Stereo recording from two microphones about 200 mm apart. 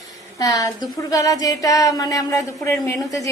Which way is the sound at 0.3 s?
20° left (ahead or behind).